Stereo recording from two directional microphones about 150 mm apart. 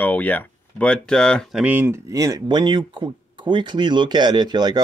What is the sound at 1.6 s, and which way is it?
Speech, 10° right (ahead or behind).